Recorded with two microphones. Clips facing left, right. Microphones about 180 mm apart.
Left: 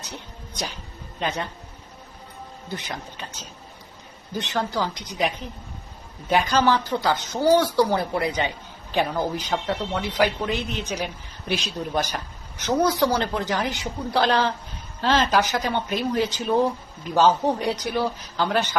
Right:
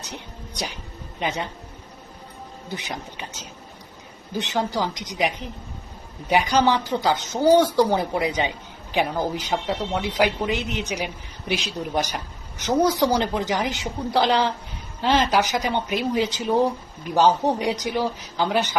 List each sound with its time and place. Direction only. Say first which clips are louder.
0.0 s speech: right 2 dB; 15° right (ahead or behind)
2.6 s speech: right 1 dB; 15° right (ahead or behind)